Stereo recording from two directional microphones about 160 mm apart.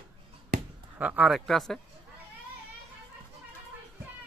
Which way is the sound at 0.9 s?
10° right (ahead or behind).